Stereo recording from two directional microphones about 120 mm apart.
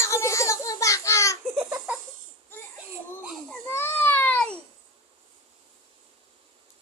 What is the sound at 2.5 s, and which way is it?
Crying, 15° left (ahead or behind).